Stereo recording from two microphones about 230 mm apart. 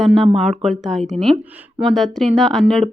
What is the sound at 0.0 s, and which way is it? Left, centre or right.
A woman's voice, centre.